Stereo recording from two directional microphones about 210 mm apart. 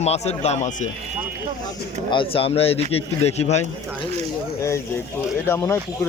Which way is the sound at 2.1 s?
25° left (ahead or behind).